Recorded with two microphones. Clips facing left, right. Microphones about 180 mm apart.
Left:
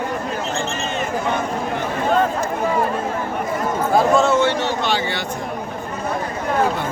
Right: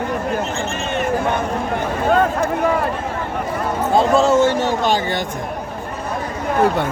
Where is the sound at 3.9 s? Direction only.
35° right (ahead or behind).